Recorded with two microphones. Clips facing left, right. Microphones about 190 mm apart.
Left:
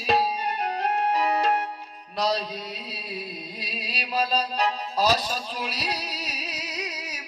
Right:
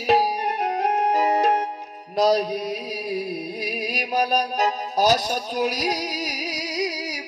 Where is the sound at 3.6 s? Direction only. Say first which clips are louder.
Right 6 dB; 40° right (ahead or behind).